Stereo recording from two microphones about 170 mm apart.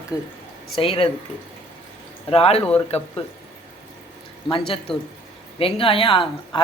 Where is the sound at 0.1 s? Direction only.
20° left (ahead or behind).